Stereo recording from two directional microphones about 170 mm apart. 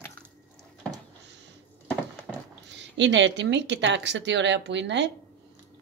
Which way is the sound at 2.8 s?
90° right.